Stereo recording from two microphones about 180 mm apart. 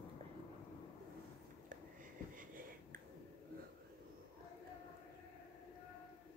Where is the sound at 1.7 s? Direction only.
45° right (ahead or behind).